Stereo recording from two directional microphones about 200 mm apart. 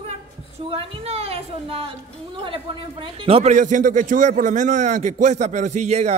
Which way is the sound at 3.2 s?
30° right (ahead or behind).